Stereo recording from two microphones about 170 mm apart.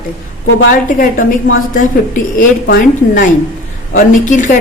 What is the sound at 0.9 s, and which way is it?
A woman's voice, 55° left (ahead or behind).